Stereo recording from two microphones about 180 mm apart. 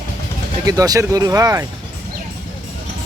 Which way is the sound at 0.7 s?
20° right (ahead or behind).